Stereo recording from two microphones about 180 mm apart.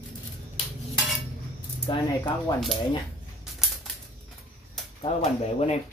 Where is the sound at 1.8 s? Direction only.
25° left (ahead or behind).